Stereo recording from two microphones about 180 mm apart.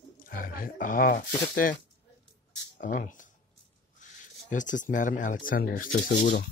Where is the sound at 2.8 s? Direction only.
45° left (ahead or behind).